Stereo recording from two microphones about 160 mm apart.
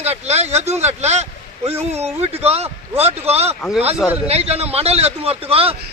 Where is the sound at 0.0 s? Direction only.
40° right (ahead or behind).